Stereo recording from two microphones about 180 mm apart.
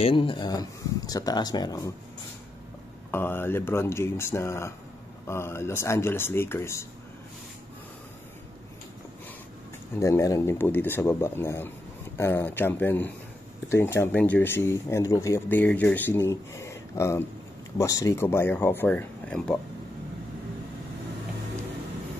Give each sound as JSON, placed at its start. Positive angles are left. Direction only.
{"t": 0.0, "sound": "speech", "side_deg": 30}
{"t": 3.1, "sound": "speech", "side_deg": 10}
{"t": 9.9, "sound": "speech", "side_deg": 15}